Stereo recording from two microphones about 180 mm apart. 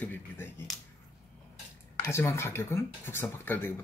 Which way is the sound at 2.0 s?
15° left (ahead or behind).